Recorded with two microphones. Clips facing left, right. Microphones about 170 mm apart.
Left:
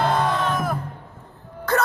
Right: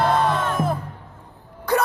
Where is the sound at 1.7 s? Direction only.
15° right (ahead or behind).